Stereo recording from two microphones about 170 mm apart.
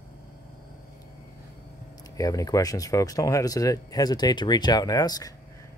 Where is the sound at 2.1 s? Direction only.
20° left (ahead or behind).